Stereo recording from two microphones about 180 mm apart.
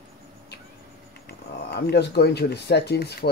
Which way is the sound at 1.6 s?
65° left (ahead or behind).